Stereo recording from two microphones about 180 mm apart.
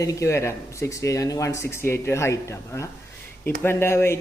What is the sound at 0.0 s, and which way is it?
Speech, 15° left (ahead or behind).